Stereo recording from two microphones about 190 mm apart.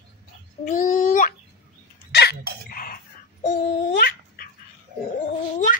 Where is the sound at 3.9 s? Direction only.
50° left (ahead or behind).